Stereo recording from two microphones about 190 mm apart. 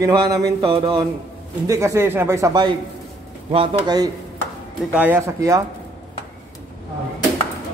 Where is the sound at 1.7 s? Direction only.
15° right (ahead or behind).